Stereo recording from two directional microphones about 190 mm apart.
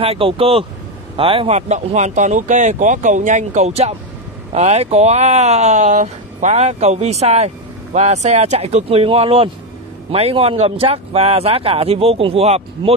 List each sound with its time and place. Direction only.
0.0 s speech: 30° right (ahead or behind)